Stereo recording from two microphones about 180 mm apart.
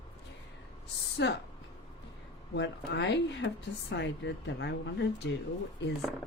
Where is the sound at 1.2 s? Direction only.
75° left (ahead or behind).